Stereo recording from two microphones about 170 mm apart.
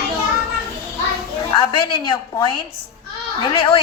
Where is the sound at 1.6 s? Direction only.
25° left (ahead or behind).